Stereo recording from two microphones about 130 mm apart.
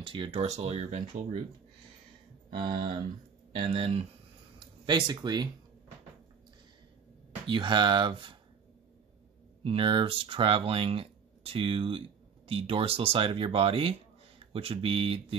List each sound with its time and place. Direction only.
0.0 s speech: 40° right (ahead or behind); by 1.4 s 60° right (ahead or behind)
2.5 s speech: 40° right (ahead or behind)
3.6 s speech: 55° right (ahead or behind)
4.8 s speech: 35° right (ahead or behind)
7.4 s speech: 40° right (ahead or behind)
9.6 s speech: 45° right (ahead or behind)